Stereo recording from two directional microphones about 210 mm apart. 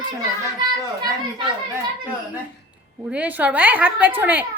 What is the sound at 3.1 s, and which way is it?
A woman's voice, 5° right (ahead or behind).